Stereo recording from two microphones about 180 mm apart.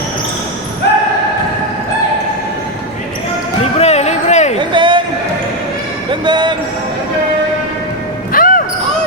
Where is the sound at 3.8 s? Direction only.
35° left (ahead or behind).